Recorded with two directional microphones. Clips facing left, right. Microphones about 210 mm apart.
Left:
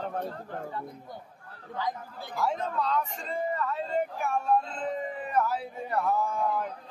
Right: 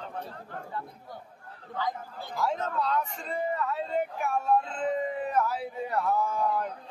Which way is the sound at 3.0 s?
Centre (ahead or behind).